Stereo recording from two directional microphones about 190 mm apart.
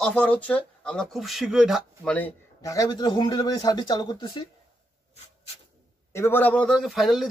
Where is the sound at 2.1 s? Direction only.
15° left (ahead or behind).